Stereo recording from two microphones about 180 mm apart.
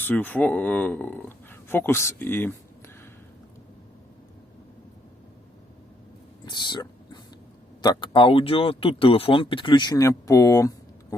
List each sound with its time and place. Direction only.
0.0 s speech: 10° left (ahead or behind)
6.4 s a sound: 25° left (ahead or behind)
7.8 s speech: 25° left (ahead or behind)